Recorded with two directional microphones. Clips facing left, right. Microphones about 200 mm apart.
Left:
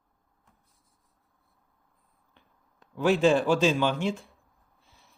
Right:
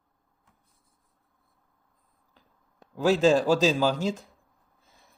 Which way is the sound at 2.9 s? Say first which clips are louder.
Right 1 dB; 35° right (ahead or behind).